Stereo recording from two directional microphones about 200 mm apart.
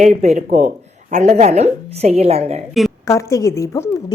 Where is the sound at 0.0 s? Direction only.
35° right (ahead or behind).